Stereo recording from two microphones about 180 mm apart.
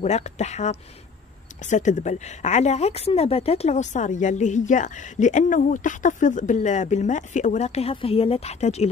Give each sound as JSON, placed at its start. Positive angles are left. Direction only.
{"t": 0.0, "sound": "speech", "side_deg": 40}